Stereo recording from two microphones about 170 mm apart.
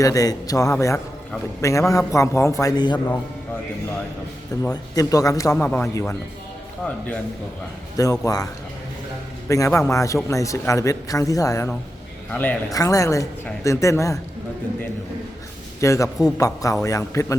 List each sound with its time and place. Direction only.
0.0 s a man's voice: 20° left (ahead or behind)
4.7 s a man's voice: 20° left (ahead or behind)
7.9 s a man's voice: 20° left (ahead or behind)
9.5 s a man's voice: 20° left (ahead or behind)
12.7 s a woman's voice: 20° left (ahead or behind)
15.8 s a man's voice: 20° left (ahead or behind)